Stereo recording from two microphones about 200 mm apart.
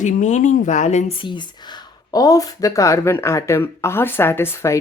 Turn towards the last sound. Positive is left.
turn(degrees=10)  # may be behind; listen again after turning